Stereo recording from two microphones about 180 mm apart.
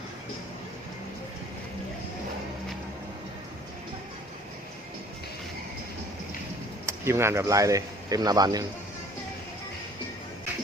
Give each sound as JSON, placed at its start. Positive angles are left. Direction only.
{"t": 6.8, "sound": "speech", "side_deg": -15}